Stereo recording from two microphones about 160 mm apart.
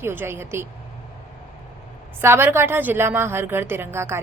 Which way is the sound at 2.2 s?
15° right (ahead or behind).